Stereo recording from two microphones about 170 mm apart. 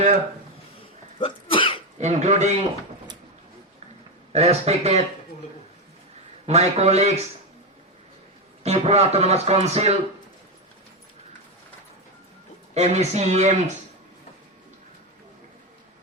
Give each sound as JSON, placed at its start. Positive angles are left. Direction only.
{"t": 1.2, "sound": "sneeze", "side_deg": 30}
{"t": 2.0, "sound": "speech", "side_deg": -40}
{"t": 4.3, "sound": "speech", "side_deg": -40}
{"t": 6.4, "sound": "speech", "side_deg": -40}
{"t": 8.6, "sound": "speech", "side_deg": -40}
{"t": 12.7, "sound": "speech", "side_deg": -40}